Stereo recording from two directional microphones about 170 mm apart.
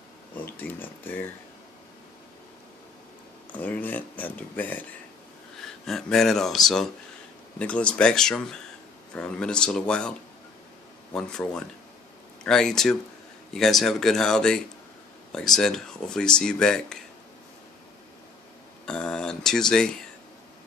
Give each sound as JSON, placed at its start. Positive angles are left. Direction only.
{"t": 0.3, "sound": "speech", "side_deg": 10}
{"t": 3.5, "sound": "speech", "side_deg": 10}
{"t": 5.9, "sound": "speech", "side_deg": 0}
{"t": 11.1, "sound": "speech", "side_deg": 5}
{"t": 18.9, "sound": "speech", "side_deg": 5}